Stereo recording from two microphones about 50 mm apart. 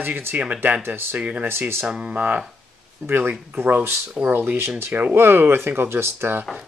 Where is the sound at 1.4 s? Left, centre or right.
Right.